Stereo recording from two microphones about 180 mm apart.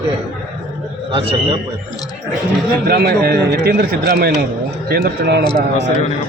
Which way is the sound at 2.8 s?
60° right (ahead or behind).